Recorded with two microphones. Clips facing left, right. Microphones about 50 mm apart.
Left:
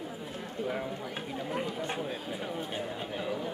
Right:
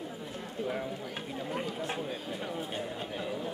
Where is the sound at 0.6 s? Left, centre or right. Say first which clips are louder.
Left 1 dB; centre.